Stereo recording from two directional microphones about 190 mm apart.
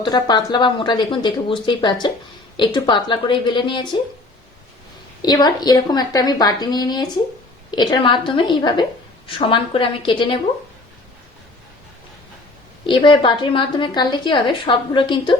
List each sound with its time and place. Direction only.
0.0 s a woman's voice: 20° left (ahead or behind)
5.2 s a woman's voice: 20° left (ahead or behind)
12.8 s a woman's voice: 25° left (ahead or behind)